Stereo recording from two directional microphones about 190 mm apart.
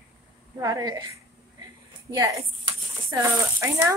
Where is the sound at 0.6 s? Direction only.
20° right (ahead or behind).